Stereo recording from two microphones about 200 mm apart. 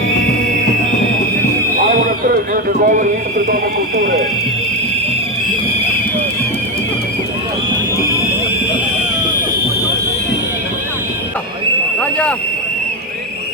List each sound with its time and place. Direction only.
2.0 s speech: 45° right (ahead or behind)